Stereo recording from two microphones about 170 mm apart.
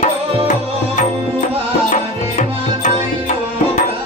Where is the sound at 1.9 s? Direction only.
50° left (ahead or behind).